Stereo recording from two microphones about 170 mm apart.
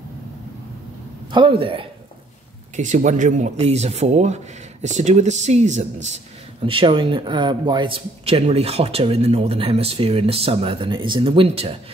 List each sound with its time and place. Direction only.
1.3 s speech: 30° right (ahead or behind)
2.7 s speech: 45° right (ahead or behind)
6.6 s speech: 30° right (ahead or behind)